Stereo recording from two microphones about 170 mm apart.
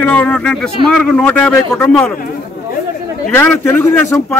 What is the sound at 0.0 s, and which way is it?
Speech, 10° left (ahead or behind).